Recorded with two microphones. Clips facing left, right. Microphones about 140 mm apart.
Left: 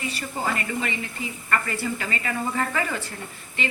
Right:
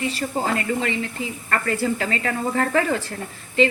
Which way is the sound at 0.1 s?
90° right.